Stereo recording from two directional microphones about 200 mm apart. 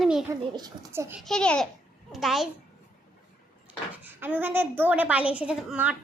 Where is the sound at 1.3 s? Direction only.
5° left (ahead or behind).